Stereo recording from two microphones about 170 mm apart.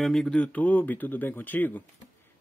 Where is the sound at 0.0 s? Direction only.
5° left (ahead or behind).